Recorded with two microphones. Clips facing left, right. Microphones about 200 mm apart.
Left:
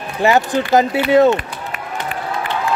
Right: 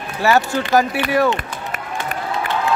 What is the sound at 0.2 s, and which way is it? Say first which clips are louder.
Speech: left 2 dB; 20° left (ahead or behind).